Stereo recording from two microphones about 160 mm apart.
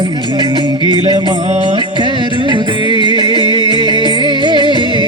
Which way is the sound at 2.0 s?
30° right (ahead or behind).